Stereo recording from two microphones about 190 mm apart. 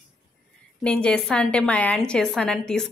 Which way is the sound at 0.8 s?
5° left (ahead or behind).